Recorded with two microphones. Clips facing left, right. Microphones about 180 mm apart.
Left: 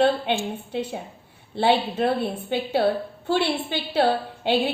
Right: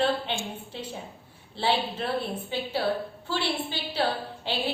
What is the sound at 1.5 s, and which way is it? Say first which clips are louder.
A woman's voice: left 6 dB; 60° left (ahead or behind).